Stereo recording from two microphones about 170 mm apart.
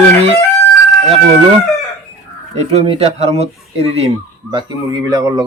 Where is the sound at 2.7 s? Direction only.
35° right (ahead or behind).